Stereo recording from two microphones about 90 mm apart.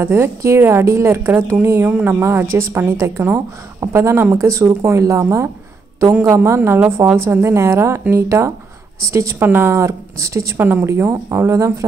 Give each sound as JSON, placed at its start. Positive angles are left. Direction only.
{"t": 0.0, "sound": "a woman's voice", "side_deg": -30}
{"t": 6.1, "sound": "a woman's voice", "side_deg": -20}
{"t": 9.4, "sound": "speech", "side_deg": -25}
{"t": 10.6, "sound": "speech", "side_deg": -25}